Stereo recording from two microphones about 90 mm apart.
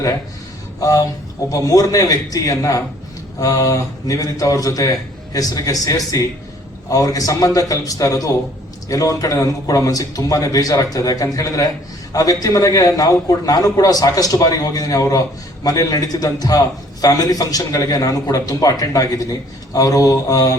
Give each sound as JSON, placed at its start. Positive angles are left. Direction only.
{"t": 0.8, "sound": "a man's voice", "side_deg": 40}